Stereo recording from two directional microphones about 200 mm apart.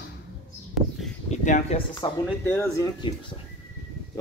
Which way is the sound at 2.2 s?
5° left (ahead or behind).